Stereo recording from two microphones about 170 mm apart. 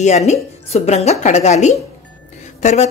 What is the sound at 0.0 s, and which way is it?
A woman's voice, 40° left (ahead or behind).